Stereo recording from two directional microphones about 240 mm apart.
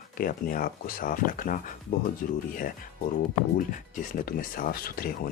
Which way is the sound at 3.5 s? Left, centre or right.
Left.